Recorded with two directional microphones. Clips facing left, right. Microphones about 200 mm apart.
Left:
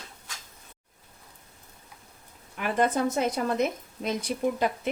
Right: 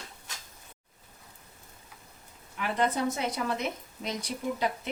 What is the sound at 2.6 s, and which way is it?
A woman's voice, 50° left (ahead or behind).